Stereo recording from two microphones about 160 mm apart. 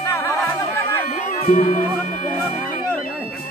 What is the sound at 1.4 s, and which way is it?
Music, 50° left (ahead or behind).